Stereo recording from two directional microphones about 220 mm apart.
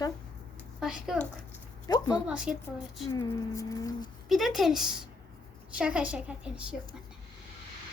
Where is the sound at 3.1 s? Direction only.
15° left (ahead or behind).